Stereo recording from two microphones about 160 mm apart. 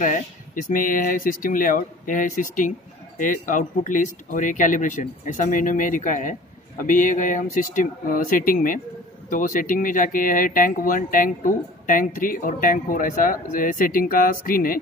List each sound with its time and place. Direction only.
0.0 s speech: 55° left (ahead or behind)